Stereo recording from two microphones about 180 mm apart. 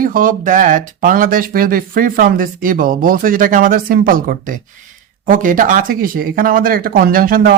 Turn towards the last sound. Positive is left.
turn(degrees=-55)  # may be behind; listen again after turning